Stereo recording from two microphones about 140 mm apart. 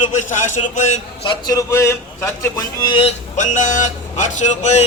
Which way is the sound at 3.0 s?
50° left (ahead or behind).